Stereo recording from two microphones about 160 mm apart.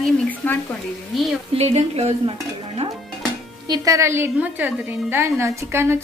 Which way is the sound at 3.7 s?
20° right (ahead or behind).